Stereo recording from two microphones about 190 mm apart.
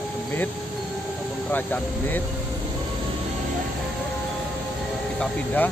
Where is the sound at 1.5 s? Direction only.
10° left (ahead or behind).